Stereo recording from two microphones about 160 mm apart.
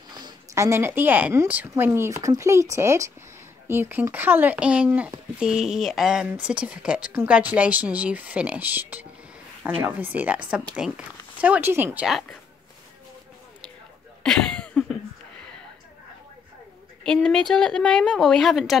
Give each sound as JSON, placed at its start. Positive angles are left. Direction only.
{"t": 0.1, "sound": "a woman's voice", "side_deg": -20}
{"t": 14.2, "sound": "cough", "side_deg": 5}
{"t": 17.0, "sound": "a woman's voice", "side_deg": 5}